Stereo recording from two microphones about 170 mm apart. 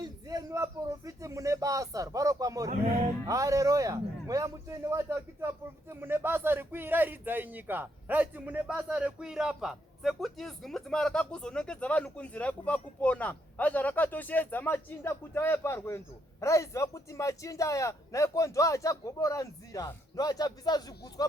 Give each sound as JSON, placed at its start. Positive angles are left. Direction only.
{"t": 0.0, "sound": "a man's voice", "side_deg": -20}